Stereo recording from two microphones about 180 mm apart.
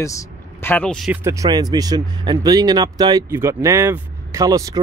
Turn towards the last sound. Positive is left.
turn(degrees=-20)  # may be behind; listen again after turning